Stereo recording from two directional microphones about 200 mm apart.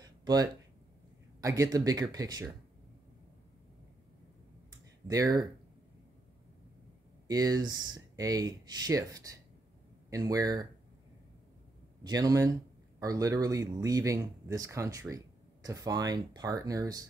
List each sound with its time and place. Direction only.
0.0 s a sound: 20° right (ahead or behind)
1.4 s speech: 15° right (ahead or behind)
5.0 s speech: 20° right (ahead or behind)
7.2 s speech: 20° right (ahead or behind)
12.0 s speech: 20° right (ahead or behind)